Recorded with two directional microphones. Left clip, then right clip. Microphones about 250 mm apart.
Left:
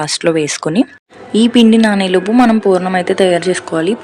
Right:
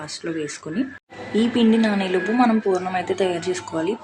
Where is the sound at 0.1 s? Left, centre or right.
Left.